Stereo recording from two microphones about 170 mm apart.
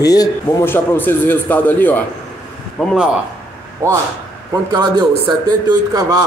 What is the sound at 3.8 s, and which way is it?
Speech, 15° right (ahead or behind).